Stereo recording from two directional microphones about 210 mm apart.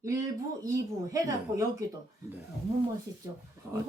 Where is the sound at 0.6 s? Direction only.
15° right (ahead or behind).